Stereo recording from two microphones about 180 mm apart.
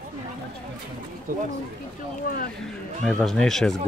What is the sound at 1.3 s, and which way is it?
Speech, 50° right (ahead or behind).